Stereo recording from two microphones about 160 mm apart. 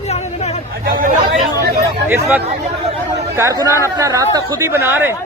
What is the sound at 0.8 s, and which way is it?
Speech, 65° right (ahead or behind).